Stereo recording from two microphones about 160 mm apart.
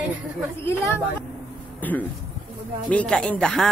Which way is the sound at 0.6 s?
15° left (ahead or behind).